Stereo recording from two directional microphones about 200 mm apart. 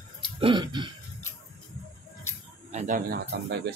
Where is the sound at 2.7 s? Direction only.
40° right (ahead or behind).